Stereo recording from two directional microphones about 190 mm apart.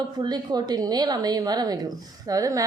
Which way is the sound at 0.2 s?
20° right (ahead or behind).